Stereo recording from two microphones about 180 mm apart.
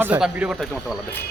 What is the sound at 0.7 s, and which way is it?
Speech, 5° left (ahead or behind).